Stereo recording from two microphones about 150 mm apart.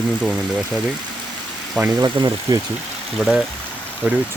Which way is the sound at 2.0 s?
25° right (ahead or behind).